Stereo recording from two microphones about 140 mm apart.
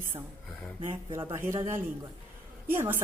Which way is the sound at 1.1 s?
20° right (ahead or behind).